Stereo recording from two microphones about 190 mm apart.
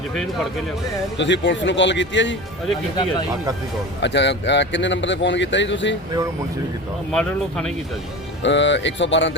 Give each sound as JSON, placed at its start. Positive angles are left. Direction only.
{"t": 1.2, "sound": "speech", "side_deg": 70}
{"t": 4.0, "sound": "speech", "side_deg": 65}
{"t": 7.1, "sound": "speech", "side_deg": 5}
{"t": 8.4, "sound": "speech", "side_deg": 70}